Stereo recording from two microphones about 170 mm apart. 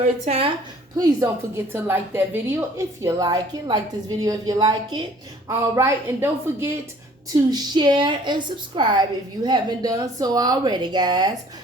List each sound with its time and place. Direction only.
0.0 s speech: 35° right (ahead or behind)
0.9 s a woman's voice: 20° right (ahead or behind)
5.5 s a woman's voice: 15° right (ahead or behind)
7.5 s a woman's voice: 25° right (ahead or behind)